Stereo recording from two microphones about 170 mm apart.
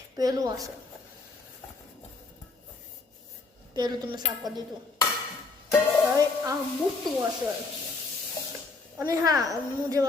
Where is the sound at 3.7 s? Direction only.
25° right (ahead or behind).